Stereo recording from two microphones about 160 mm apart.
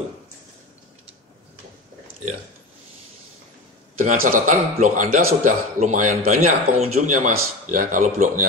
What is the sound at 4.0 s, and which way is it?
Speech, 55° right (ahead or behind).